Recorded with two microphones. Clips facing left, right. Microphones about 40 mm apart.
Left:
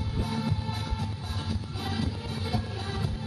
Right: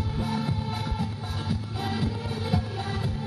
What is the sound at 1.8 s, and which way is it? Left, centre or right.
Music, centre.